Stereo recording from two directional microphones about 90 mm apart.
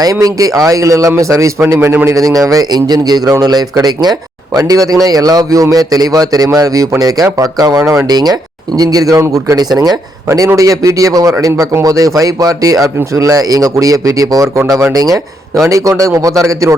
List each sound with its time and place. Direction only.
0.0 s a man's voice: 40° right (ahead or behind)